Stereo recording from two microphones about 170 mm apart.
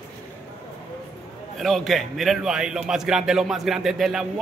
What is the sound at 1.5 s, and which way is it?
A man's voice, centre (ahead or behind).